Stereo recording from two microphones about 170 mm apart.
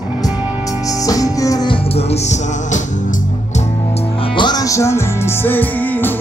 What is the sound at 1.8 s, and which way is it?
Music, 35° left (ahead or behind).